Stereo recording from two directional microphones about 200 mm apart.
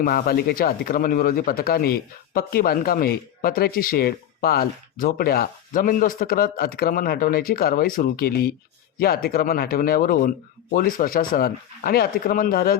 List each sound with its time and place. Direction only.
0.0 s speech: 45° left (ahead or behind)